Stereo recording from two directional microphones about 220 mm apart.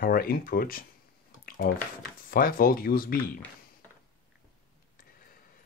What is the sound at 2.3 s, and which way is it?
Speech, 40° left (ahead or behind).